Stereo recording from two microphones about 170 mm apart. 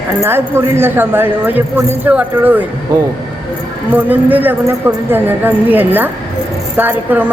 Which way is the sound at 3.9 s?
10° right (ahead or behind).